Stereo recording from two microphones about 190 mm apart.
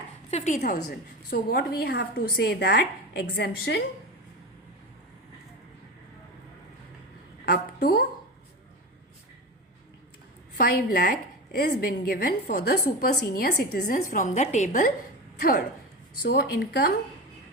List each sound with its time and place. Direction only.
0.3 s a woman's voice: 35° left (ahead or behind)
0.9 s a woman's voice: 55° left (ahead or behind)
7.4 s a sound: 55° left (ahead or behind)
10.5 s a woman's voice: 50° left (ahead or behind)